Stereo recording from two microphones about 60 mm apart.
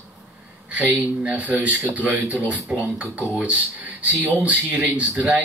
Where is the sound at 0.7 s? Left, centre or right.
Right.